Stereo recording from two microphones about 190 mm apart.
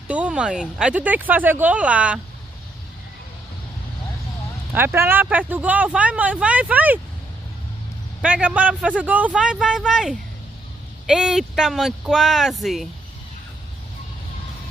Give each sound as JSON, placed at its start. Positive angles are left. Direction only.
{"t": 0.1, "sound": "speech", "side_deg": -5}
{"t": 4.7, "sound": "speech", "side_deg": -10}
{"t": 8.2, "sound": "a man's voice", "side_deg": -5}